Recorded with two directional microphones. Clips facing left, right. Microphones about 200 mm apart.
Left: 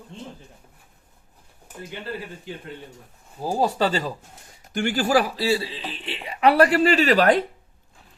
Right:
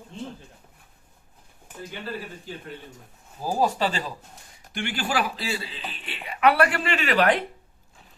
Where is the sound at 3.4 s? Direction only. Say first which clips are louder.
Left 2 dB; 35° left (ahead or behind).